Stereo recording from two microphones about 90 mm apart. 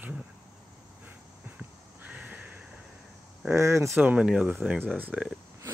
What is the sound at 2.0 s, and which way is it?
Crow, 15° right (ahead or behind).